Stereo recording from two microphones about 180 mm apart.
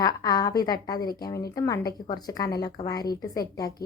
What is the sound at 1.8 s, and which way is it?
Speech, 55° left (ahead or behind).